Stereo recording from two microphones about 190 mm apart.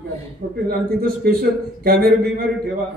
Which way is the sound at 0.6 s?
50° right (ahead or behind).